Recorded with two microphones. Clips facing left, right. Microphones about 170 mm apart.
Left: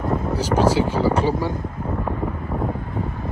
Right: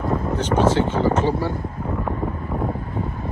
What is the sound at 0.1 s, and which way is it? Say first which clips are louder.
Speech: even; 10° left (ahead or behind).